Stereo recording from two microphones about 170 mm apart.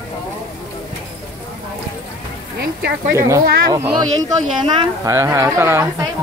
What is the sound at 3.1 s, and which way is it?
A woman's voice, 15° right (ahead or behind).